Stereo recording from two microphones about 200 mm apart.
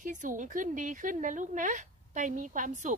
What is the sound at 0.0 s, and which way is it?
A woman's voice, 40° right (ahead or behind).